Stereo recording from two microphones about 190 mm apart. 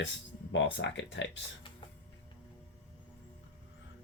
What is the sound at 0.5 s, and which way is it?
Speech, 70° left (ahead or behind).